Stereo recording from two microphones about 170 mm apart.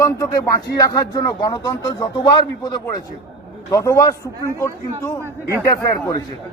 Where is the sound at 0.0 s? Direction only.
20° left (ahead or behind).